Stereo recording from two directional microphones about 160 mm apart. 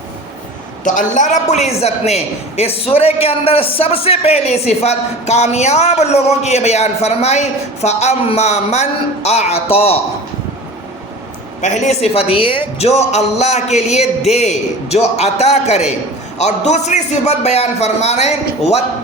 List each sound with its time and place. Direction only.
0.9 s a woman's voice: 50° left (ahead or behind)
11.6 s a woman's voice: 45° left (ahead or behind)